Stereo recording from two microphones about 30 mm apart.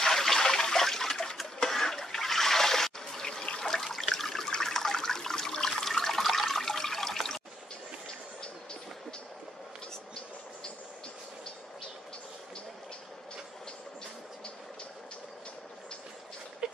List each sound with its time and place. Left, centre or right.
0.0 s toilet flush: centre
1.6 s water: centre
4.5 s toilet flush: centre
16.6 s a sound: right